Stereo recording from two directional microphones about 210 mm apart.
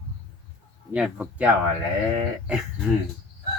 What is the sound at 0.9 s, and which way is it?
Speech, 5° right (ahead or behind).